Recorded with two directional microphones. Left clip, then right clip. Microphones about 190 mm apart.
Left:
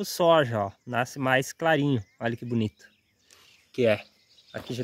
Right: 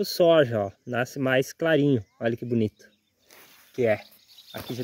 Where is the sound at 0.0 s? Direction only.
20° left (ahead or behind).